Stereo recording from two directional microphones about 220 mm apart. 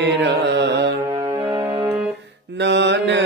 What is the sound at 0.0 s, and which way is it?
Music, 50° right (ahead or behind).